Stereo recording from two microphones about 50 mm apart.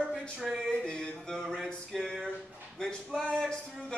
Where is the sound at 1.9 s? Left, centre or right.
Centre.